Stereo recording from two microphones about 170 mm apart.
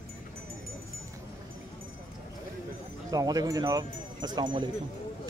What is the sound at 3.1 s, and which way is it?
Speech, 20° right (ahead or behind).